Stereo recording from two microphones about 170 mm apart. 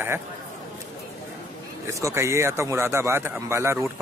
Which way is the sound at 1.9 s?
15° right (ahead or behind).